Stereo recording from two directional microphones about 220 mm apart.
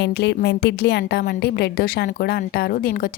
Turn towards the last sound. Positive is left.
turn(degrees=40)  # may be behind; listen again after turning